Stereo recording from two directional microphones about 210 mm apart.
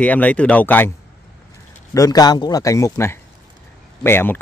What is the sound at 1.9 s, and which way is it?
Speech, 15° left (ahead or behind).